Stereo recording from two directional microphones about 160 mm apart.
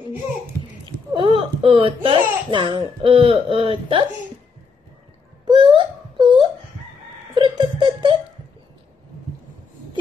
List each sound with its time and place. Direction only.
0.8 s a child's voice: 30° right (ahead or behind)
5.4 s wail: 30° right (ahead or behind)
7.3 s giggle: 30° right (ahead or behind)